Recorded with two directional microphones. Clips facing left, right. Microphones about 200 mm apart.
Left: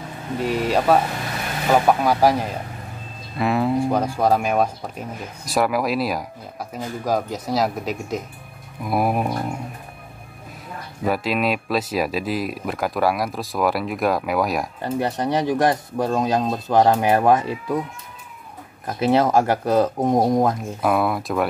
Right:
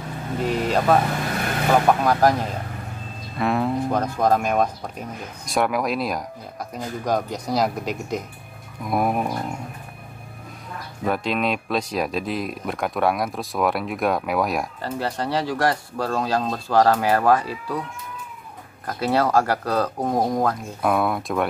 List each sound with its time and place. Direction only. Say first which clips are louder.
0.4 s speech: left 1 dB; 10° left (ahead or behind)
11.1 s speech: left 2 dB; 5° left (ahead or behind)
14.8 s speech: left 3 dB; 20° left (ahead or behind)
18.9 s speech: left 3 dB; 20° left (ahead or behind)
20.8 s speech: left 1 dB; centre (ahead or behind)